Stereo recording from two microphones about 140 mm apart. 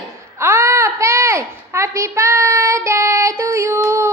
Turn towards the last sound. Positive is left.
turn(degrees=-20)  # may be behind; listen again after turning